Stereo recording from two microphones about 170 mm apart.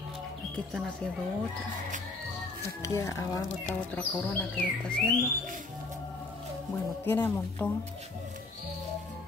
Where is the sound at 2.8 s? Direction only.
15° left (ahead or behind).